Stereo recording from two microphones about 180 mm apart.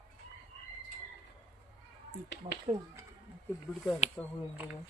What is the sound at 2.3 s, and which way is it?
Speech, 70° left (ahead or behind).